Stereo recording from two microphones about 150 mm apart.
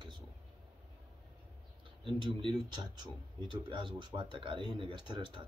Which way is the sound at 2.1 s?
35° right (ahead or behind).